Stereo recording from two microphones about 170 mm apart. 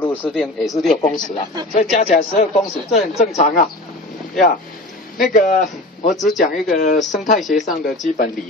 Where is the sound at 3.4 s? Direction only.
50° left (ahead or behind).